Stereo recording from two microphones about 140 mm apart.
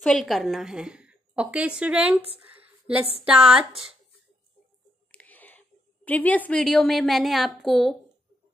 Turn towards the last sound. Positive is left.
turn(degrees=0)  # may be behind; listen again after turning